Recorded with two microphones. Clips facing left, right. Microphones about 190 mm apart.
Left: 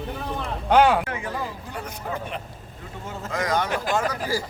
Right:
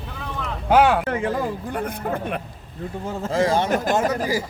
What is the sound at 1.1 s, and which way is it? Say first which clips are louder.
Speech: right 7 dB; 50° right (ahead or behind).